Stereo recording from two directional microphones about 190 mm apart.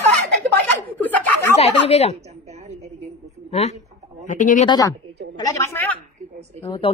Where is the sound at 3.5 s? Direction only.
35° left (ahead or behind).